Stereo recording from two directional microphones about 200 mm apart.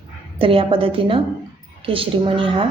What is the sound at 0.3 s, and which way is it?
A woman's voice, 25° right (ahead or behind).